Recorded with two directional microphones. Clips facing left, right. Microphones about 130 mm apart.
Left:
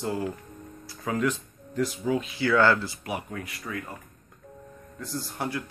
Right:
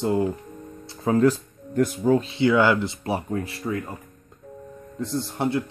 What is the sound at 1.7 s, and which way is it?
Speech, 50° right (ahead or behind).